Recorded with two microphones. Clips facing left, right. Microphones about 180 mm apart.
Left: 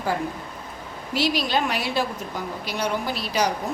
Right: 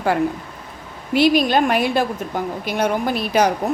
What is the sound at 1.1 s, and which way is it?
A woman's voice, 55° right (ahead or behind).